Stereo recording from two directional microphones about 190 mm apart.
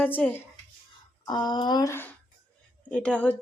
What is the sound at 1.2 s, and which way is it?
A woman's voice, 25° left (ahead or behind).